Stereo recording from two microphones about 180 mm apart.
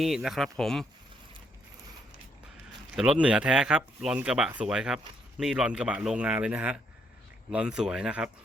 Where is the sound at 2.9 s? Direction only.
5° right (ahead or behind).